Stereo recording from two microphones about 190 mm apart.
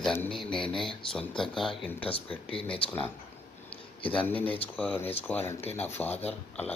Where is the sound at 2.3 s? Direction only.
30° left (ahead or behind).